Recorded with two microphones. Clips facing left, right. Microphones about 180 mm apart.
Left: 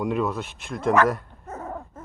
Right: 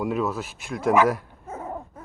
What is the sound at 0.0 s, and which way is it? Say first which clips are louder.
Speech: even; 5° right (ahead or behind).